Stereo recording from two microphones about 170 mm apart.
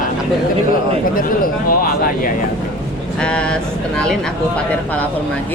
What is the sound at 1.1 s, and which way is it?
Speech, 55° left (ahead or behind).